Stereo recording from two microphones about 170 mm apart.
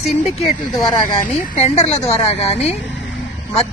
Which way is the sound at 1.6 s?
40° left (ahead or behind).